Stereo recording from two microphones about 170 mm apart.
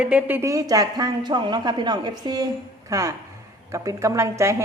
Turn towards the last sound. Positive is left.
turn(degrees=-15)  # may be behind; listen again after turning